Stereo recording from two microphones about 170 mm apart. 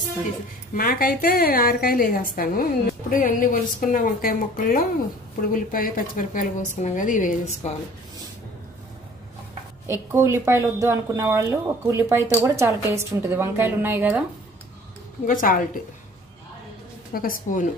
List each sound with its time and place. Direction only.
0.7 s a woman's voice: 60° left (ahead or behind)
10.1 s speech: 15° right (ahead or behind)
15.2 s a woman's voice: 55° left (ahead or behind)
17.1 s a woman's voice: 55° left (ahead or behind)